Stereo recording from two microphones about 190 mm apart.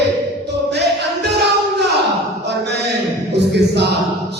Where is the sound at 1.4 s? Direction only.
60° right (ahead or behind).